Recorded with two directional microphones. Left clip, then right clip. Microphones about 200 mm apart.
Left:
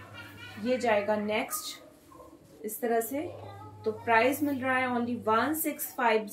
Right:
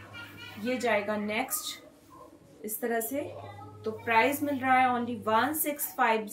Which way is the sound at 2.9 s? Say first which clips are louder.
Left 3 dB; 15° right (ahead or behind).